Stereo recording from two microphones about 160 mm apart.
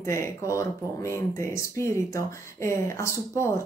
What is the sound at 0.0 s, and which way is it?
A woman's voice, 20° left (ahead or behind).